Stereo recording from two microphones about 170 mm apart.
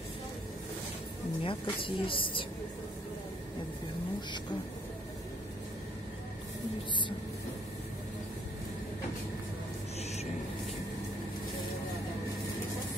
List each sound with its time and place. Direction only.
1.4 s a woman's voice: 30° left (ahead or behind)